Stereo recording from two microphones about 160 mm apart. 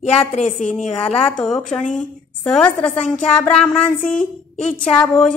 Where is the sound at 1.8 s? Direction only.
55° left (ahead or behind).